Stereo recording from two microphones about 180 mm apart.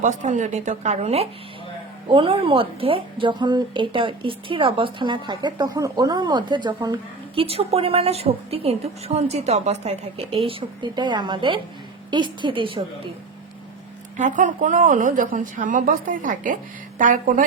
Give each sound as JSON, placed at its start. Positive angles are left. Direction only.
{"t": 0.0, "sound": "a woman's voice", "side_deg": -40}
{"t": 14.2, "sound": "speech", "side_deg": -45}